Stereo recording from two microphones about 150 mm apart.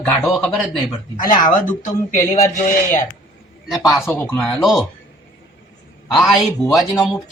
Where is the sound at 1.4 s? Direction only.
60° left (ahead or behind).